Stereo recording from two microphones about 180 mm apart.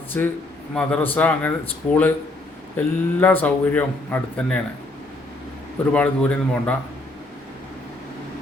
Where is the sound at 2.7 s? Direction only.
10° left (ahead or behind).